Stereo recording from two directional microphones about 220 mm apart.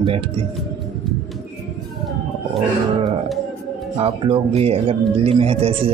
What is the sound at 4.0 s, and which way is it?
Speech, 25° right (ahead or behind).